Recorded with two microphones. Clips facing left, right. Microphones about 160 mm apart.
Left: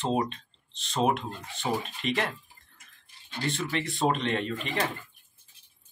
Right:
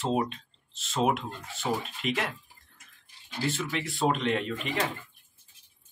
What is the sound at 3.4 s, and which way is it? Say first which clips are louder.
Speech: even; 5° right (ahead or behind).